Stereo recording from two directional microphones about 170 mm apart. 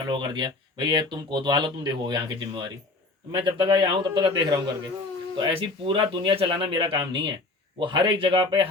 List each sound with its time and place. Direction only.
0.0 s speech: 25° right (ahead or behind)